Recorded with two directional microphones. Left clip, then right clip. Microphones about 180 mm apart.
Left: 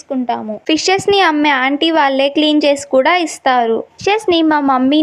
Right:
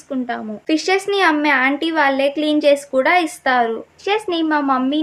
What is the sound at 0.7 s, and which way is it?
A woman's voice, 45° left (ahead or behind).